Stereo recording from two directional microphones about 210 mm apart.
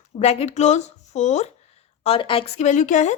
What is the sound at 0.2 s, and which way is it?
A woman's voice, 30° left (ahead or behind).